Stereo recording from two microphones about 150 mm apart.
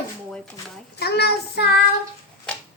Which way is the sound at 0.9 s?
90° left.